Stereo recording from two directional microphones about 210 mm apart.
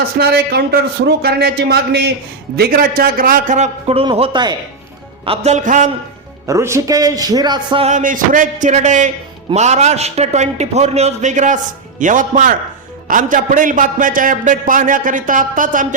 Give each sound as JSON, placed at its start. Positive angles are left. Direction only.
{"t": 0.2, "sound": "a man's voice", "side_deg": -50}
{"t": 6.5, "sound": "a man's voice", "side_deg": -15}
{"t": 7.9, "sound": "a man's voice", "side_deg": -40}